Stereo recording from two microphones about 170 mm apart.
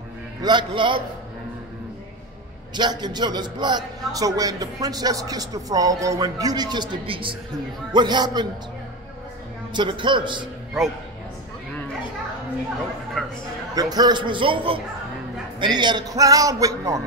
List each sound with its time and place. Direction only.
0.4 s a man's voice: 25° right (ahead or behind)
2.7 s a man's voice: 25° right (ahead or behind)
9.8 s a man's voice: 30° right (ahead or behind)
13.2 s speech: 5° left (ahead or behind)
13.7 s a man's voice: 25° right (ahead or behind)